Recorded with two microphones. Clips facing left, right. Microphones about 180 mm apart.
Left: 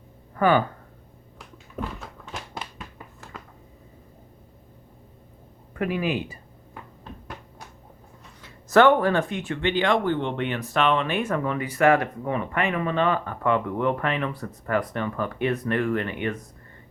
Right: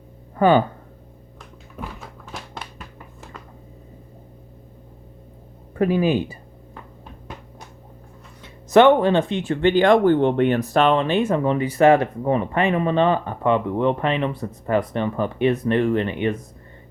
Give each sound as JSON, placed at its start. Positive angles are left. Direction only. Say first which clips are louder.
{"t": 0.3, "sound": "speech", "louder": "right 4 dB", "side_deg": -25}
{"t": 2.3, "sound": "music", "louder": "even", "side_deg": 0}
{"t": 5.7, "sound": "speech", "louder": "right 7 dB", "side_deg": -30}
{"t": 8.4, "sound": "speech", "louder": "right 4 dB", "side_deg": -20}